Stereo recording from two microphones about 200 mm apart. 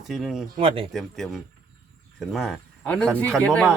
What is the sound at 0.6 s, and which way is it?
Speech, 25° right (ahead or behind).